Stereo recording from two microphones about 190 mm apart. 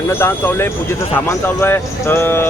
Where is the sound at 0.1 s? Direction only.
10° left (ahead or behind).